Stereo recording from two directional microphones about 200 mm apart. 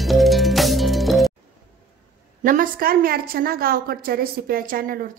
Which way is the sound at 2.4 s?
45° right (ahead or behind).